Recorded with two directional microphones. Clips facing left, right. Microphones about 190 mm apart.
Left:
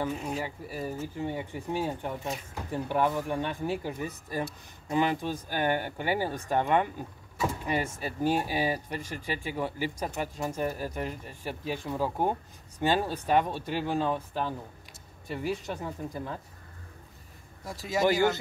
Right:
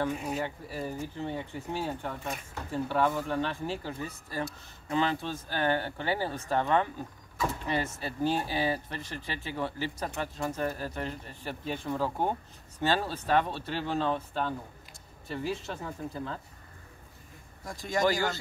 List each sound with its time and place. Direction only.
0.4 s speech: 5° left (ahead or behind)
17.6 s speech: 5° left (ahead or behind)
18.0 s speech: 20° left (ahead or behind)